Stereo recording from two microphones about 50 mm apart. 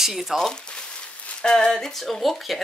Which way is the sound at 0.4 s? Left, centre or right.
Centre.